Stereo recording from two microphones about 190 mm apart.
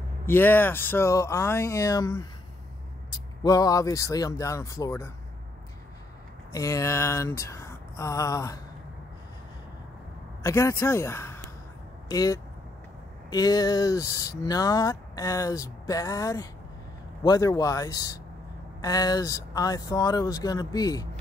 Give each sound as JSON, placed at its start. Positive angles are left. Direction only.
{"t": 0.3, "sound": "speech", "side_deg": 10}
{"t": 6.5, "sound": "speech", "side_deg": 15}
{"t": 10.4, "sound": "speech", "side_deg": 15}